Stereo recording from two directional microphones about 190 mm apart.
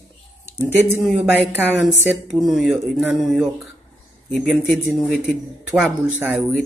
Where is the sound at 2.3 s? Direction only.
Centre (ahead or behind).